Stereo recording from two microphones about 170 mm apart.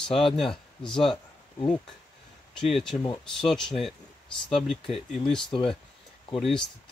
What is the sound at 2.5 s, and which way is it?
Speech, centre (ahead or behind).